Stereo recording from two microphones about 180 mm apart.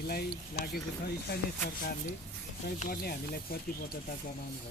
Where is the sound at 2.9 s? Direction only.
60° left (ahead or behind).